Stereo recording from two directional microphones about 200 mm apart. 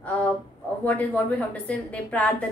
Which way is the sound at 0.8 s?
10° left (ahead or behind).